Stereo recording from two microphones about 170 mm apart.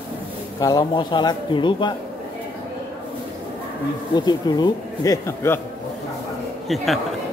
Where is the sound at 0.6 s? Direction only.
20° left (ahead or behind).